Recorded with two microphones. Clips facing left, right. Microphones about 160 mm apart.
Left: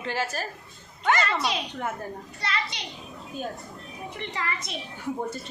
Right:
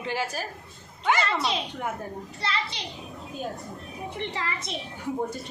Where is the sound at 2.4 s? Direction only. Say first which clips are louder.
Right 1 dB; 30° right (ahead or behind).